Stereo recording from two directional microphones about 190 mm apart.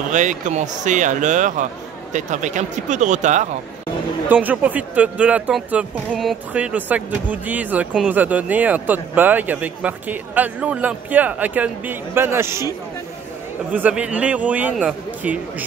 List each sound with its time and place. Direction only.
0.1 s speech: 40° right (ahead or behind)
4.3 s speech: 10° right (ahead or behind)